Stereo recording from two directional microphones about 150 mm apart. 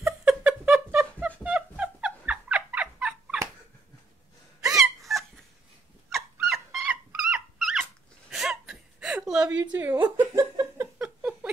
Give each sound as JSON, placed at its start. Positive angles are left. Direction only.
{"t": 0.0, "sound": "a sound", "side_deg": -10}
{"t": 4.7, "sound": "hiccup", "side_deg": 0}
{"t": 6.4, "sound": "dog", "side_deg": 0}
{"t": 9.7, "sound": "a woman's voice", "side_deg": -10}
{"t": 10.1, "sound": "laughter", "side_deg": -25}
{"t": 11.0, "sound": "a sound", "side_deg": -5}